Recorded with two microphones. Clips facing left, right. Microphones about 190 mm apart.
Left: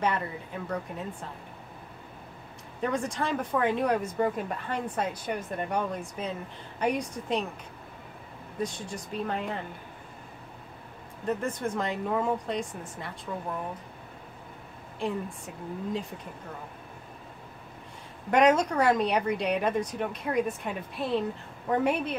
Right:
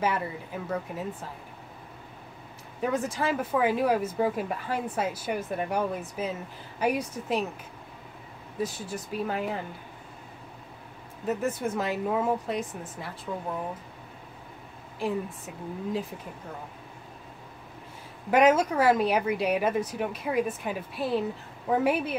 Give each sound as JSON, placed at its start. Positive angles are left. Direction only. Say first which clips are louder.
{"t": 0.0, "sound": "speech", "louder": "right 1 dB", "side_deg": -5}
{"t": 2.8, "sound": "speech", "louder": "right 2 dB", "side_deg": -5}
{"t": 8.5, "sound": "speech", "louder": "right 1 dB", "side_deg": -5}
{"t": 11.2, "sound": "speech", "louder": "right 1 dB", "side_deg": -5}
{"t": 15.0, "sound": "speech", "louder": "right 2 dB", "side_deg": -5}
{"t": 18.3, "sound": "speech", "louder": "right 1 dB", "side_deg": -5}